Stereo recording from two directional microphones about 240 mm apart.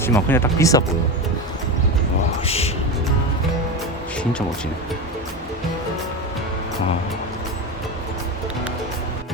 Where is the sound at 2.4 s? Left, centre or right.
Left.